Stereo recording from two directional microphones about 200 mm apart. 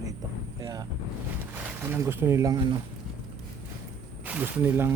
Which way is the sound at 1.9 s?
10° right (ahead or behind).